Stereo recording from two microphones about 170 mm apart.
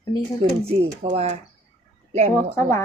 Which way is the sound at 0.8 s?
40° right (ahead or behind).